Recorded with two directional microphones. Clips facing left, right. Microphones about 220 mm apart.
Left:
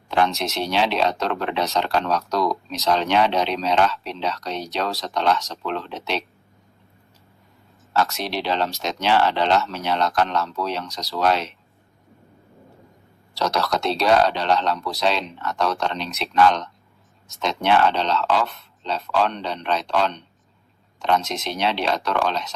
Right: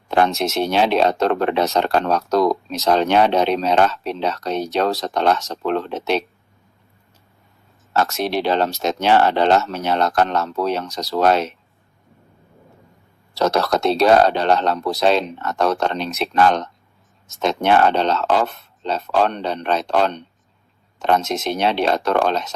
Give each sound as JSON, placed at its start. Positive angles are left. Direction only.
{"t": 0.1, "sound": "speech", "side_deg": -50}
{"t": 7.9, "sound": "speech", "side_deg": -50}
{"t": 13.3, "sound": "speech", "side_deg": -50}